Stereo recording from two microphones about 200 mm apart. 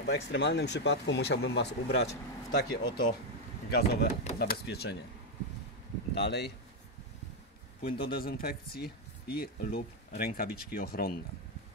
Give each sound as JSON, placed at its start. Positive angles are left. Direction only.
{"t": 0.0, "sound": "speech", "side_deg": 60}
{"t": 6.1, "sound": "speech", "side_deg": 60}
{"t": 7.8, "sound": "speech", "side_deg": 50}